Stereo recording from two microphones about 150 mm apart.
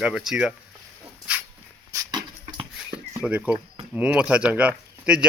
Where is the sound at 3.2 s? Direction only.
5° right (ahead or behind).